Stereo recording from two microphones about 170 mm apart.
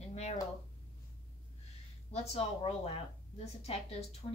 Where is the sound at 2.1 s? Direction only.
35° left (ahead or behind).